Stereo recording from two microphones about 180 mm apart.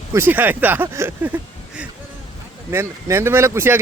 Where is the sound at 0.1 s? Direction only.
10° right (ahead or behind).